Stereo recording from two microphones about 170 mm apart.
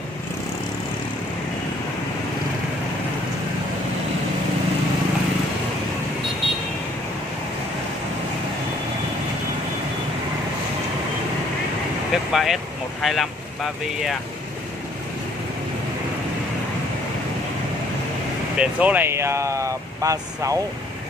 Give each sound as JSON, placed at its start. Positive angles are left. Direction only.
{"t": 12.1, "sound": "vehicle", "side_deg": 0}
{"t": 13.0, "sound": "speech", "side_deg": 0}
{"t": 18.6, "sound": "speech", "side_deg": -10}